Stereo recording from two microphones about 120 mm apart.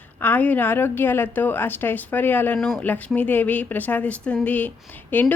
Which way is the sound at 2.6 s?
Centre (ahead or behind).